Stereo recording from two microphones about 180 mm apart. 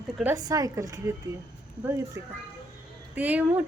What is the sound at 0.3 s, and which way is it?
Speech, 20° right (ahead or behind).